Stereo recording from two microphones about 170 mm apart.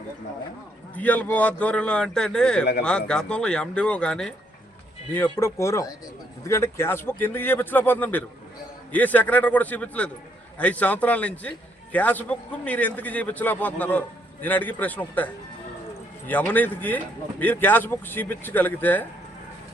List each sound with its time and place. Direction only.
0.9 s a man's voice: 10° left (ahead or behind)
5.4 s a man's voice: 15° left (ahead or behind)